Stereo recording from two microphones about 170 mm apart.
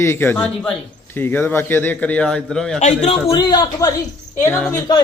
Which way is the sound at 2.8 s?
40° left (ahead or behind).